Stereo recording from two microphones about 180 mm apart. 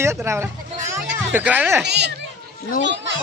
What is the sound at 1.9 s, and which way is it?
Speech, 70° right (ahead or behind).